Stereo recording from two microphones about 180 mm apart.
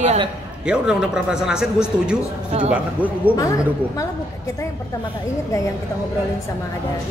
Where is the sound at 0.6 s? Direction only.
5° right (ahead or behind).